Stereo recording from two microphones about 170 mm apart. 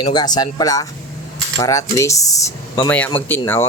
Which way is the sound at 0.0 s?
25° left (ahead or behind).